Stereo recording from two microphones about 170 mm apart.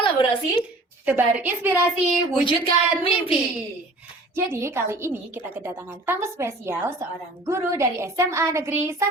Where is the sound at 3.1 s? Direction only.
5° right (ahead or behind).